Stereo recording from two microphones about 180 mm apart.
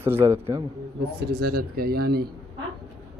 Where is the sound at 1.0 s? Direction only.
55° right (ahead or behind).